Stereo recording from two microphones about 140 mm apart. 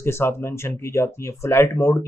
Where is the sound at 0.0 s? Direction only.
15° left (ahead or behind).